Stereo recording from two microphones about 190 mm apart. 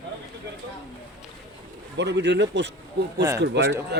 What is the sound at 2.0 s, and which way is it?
Speech, 65° right (ahead or behind).